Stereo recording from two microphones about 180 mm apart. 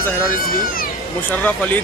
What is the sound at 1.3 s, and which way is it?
Speech, 10° left (ahead or behind).